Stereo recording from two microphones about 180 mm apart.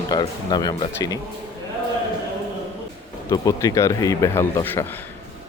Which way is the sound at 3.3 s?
20° left (ahead or behind).